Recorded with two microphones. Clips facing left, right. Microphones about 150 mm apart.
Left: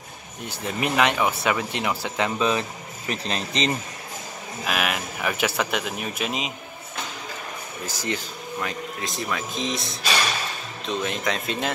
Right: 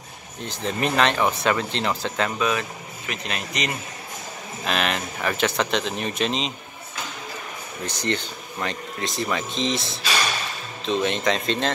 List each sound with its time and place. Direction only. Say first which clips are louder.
0.4 s speech: right 2 dB; 15° left (ahead or behind)
3.1 s speech: left 3 dB; 30° left (ahead or behind)
4.6 s speech: right 2 dB; 10° left (ahead or behind)
7.8 s speech: right 3 dB; 5° left (ahead or behind)